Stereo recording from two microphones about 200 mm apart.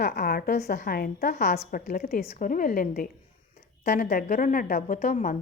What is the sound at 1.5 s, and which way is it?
Speech, 35° left (ahead or behind).